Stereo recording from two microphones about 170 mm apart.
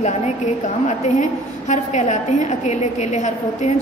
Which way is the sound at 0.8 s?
45° left (ahead or behind).